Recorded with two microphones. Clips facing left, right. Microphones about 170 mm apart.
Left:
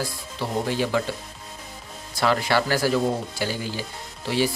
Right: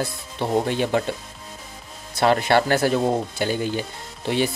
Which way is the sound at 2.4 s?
55° right (ahead or behind).